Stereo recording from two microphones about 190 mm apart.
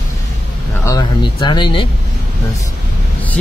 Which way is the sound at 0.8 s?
20° left (ahead or behind).